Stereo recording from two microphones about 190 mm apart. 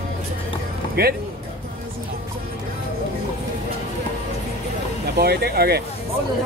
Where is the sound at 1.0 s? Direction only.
55° right (ahead or behind).